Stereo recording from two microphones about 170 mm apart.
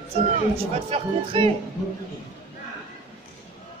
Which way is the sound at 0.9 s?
35° right (ahead or behind).